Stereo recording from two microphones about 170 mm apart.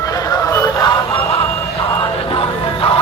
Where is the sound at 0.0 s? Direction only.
20° left (ahead or behind).